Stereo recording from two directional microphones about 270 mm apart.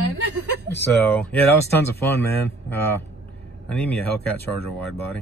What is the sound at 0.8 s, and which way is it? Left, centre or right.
Speech, centre.